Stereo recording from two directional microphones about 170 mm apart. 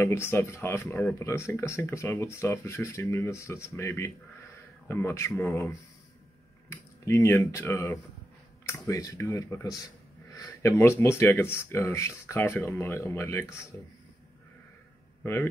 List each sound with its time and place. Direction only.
0.0 s speech: 15° left (ahead or behind)